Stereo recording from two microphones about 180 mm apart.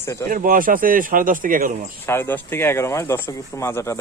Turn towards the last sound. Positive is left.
turn(degrees=15)  # may be behind; listen again after turning